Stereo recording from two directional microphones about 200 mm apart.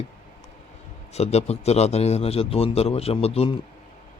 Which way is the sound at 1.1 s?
30° left (ahead or behind).